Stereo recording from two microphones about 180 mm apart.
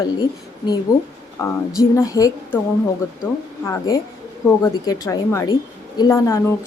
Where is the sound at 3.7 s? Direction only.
15° left (ahead or behind).